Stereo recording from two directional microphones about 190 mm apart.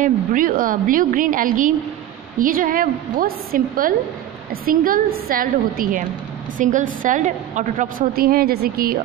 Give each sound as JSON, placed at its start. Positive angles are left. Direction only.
{"t": 0.0, "sound": "a woman's voice", "side_deg": -45}